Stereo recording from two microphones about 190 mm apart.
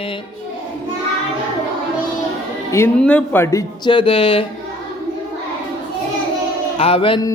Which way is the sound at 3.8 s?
25° left (ahead or behind).